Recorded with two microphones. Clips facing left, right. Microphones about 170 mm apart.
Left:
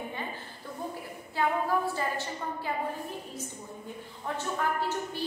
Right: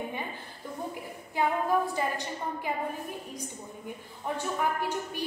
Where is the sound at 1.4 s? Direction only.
15° right (ahead or behind).